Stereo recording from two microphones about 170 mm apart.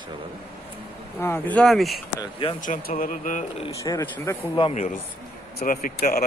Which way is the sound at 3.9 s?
25° left (ahead or behind).